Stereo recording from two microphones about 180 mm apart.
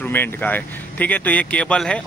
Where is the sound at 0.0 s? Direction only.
10° left (ahead or behind).